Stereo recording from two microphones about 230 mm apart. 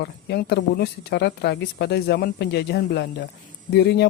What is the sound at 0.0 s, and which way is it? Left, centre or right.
Speech, left.